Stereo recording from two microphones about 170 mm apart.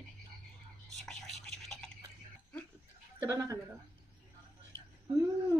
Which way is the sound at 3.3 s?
20° right (ahead or behind).